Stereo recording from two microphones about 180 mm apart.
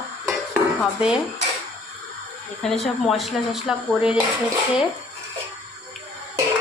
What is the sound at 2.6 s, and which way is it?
Speech, centre (ahead or behind).